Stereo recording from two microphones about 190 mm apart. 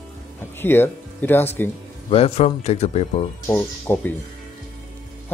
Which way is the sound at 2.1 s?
30° left (ahead or behind).